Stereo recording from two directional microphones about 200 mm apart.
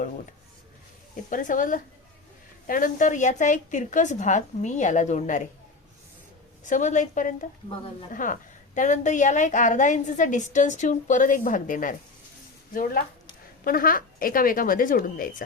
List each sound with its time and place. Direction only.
1.1 s a woman's voice: 40° left (ahead or behind)
6.7 s a woman's voice: 40° left (ahead or behind)